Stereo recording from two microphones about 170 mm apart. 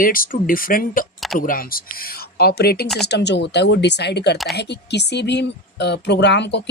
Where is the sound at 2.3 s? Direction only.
65° left (ahead or behind).